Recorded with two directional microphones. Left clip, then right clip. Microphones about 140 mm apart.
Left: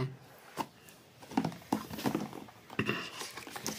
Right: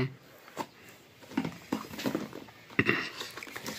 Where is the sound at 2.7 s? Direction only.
45° right (ahead or behind).